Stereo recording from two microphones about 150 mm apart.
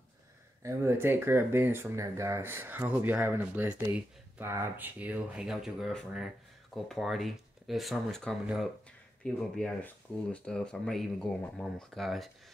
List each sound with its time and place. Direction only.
0.6 s speech: 20° right (ahead or behind); by 12.3 s centre (ahead or behind)